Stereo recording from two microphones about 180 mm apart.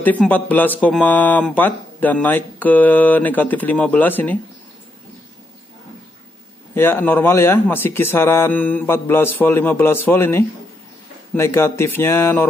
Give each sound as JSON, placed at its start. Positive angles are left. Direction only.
{"t": 0.0, "sound": "speech", "side_deg": 10}
{"t": 6.7, "sound": "speech", "side_deg": 10}